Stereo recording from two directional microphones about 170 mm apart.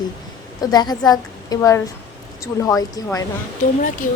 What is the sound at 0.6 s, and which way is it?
A woman's voice, 25° left (ahead or behind).